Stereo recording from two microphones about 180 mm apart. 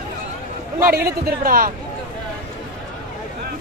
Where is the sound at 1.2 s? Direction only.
55° right (ahead or behind).